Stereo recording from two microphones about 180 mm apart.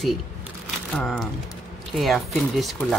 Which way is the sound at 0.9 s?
5° left (ahead or behind).